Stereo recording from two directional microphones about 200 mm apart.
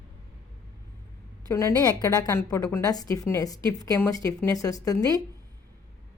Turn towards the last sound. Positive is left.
turn(degrees=20)  # may be behind; listen again after turning